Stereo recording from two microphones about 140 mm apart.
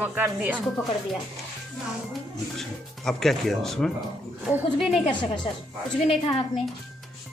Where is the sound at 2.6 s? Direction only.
Centre (ahead or behind).